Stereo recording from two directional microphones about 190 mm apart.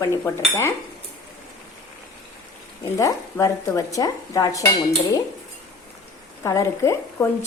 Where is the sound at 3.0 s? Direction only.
15° left (ahead or behind).